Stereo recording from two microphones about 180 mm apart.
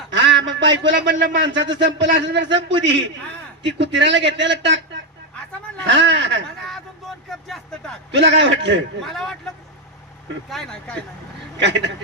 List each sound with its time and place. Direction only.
0.1 s a man's voice: 85° right
3.6 s a man's voice: 80° right
5.9 s a man's voice: 90° right
7.3 s speech: centre (ahead or behind)
8.1 s a man's voice: 90° right
9.0 s speech: centre (ahead or behind)
10.5 s speech: centre (ahead or behind)
11.5 s a man's voice: 80° right